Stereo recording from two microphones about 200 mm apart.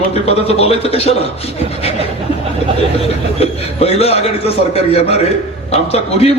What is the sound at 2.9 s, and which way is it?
A man's voice, 30° left (ahead or behind).